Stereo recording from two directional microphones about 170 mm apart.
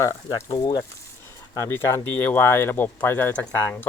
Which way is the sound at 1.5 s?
15° left (ahead or behind).